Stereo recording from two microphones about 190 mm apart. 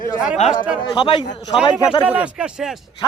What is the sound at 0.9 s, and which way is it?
Speech, 25° left (ahead or behind).